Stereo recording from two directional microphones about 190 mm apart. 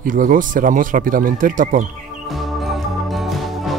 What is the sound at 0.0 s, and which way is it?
Speech, 45° right (ahead or behind).